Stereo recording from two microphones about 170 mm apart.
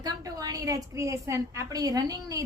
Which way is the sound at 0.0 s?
20° right (ahead or behind).